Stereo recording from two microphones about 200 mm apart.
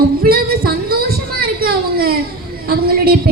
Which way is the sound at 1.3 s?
50° right (ahead or behind).